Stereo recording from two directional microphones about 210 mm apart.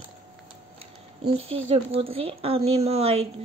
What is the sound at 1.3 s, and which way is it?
Speech, 70° right (ahead or behind).